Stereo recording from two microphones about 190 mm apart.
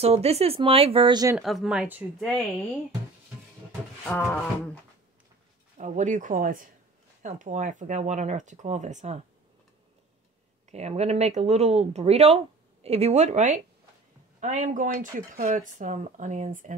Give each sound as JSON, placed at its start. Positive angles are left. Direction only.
{"t": 0.0, "sound": "speech", "side_deg": -35}
{"t": 1.3, "sound": "speech", "side_deg": 0}
{"t": 4.0, "sound": "speech", "side_deg": 5}
{"t": 5.8, "sound": "speech", "side_deg": -40}
{"t": 10.7, "sound": "speech", "side_deg": -35}